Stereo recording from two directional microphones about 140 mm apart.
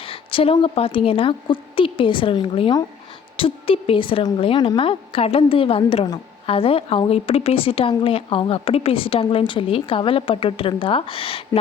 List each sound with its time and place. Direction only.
0.0 s a woman's voice: 40° left (ahead or behind)